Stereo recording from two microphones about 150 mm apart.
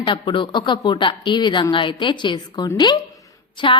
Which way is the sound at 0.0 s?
30° left (ahead or behind).